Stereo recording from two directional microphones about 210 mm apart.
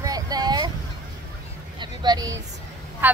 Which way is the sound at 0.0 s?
15° right (ahead or behind).